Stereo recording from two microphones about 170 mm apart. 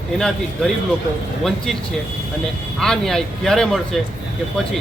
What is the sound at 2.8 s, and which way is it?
Speech, 5° left (ahead or behind).